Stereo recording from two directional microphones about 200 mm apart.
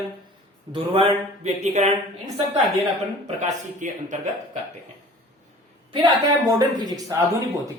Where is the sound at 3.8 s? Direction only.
40° right (ahead or behind).